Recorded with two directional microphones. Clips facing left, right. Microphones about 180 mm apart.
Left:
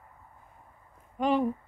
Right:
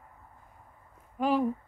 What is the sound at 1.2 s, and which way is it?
Speech, 5° right (ahead or behind).